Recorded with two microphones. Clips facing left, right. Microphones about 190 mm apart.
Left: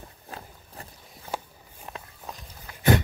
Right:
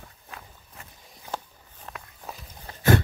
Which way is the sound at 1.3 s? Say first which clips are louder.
Left 1 dB; 10° left (ahead or behind).